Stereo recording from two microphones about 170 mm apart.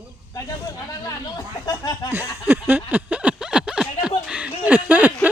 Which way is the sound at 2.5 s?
10° right (ahead or behind).